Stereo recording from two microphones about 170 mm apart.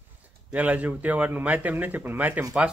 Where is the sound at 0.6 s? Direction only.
10° right (ahead or behind).